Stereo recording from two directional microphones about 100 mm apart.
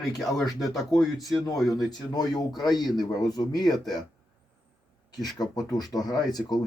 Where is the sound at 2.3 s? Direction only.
40° left (ahead or behind).